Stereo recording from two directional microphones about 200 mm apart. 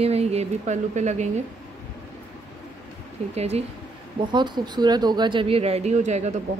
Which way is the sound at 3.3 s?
30° right (ahead or behind).